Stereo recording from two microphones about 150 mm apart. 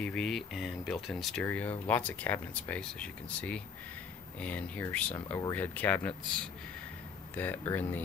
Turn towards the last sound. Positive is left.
turn(degrees=15)  # may be behind; listen again after turning